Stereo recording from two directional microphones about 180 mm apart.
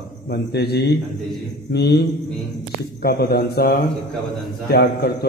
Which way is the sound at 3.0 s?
60° left (ahead or behind).